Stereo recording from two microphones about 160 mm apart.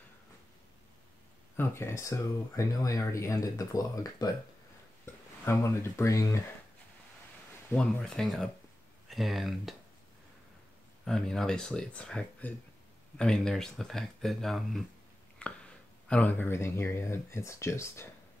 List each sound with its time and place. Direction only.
1.6 s speech: 15° left (ahead or behind)
5.4 s speech: 15° left (ahead or behind)
7.7 s speech: 5° left (ahead or behind)
11.1 s speech: 5° left (ahead or behind)
15.4 s a sound: 10° left (ahead or behind)
16.1 s speech: 10° left (ahead or behind)